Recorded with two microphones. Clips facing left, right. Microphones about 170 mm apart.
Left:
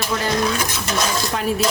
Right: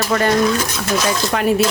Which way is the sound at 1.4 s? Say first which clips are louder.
Right 7 dB; 70° right (ahead or behind).